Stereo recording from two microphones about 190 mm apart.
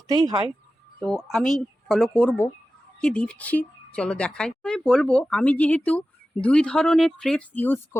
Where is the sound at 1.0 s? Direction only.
Centre (ahead or behind).